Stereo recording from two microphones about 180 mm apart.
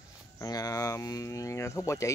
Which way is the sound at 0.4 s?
20° left (ahead or behind).